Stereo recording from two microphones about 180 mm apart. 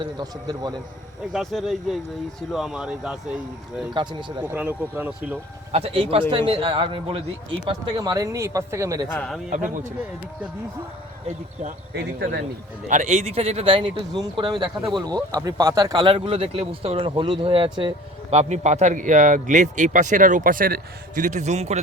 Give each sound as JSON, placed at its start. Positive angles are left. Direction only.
{"t": 0.0, "sound": "speech", "side_deg": -20}
{"t": 1.3, "sound": "speech", "side_deg": 0}
{"t": 3.9, "sound": "speech", "side_deg": -25}
{"t": 4.5, "sound": "speech", "side_deg": -10}
{"t": 5.7, "sound": "speech", "side_deg": -30}
{"t": 9.1, "sound": "speech", "side_deg": 0}
{"t": 11.9, "sound": "speech", "side_deg": -65}
{"t": 12.9, "sound": "speech", "side_deg": -40}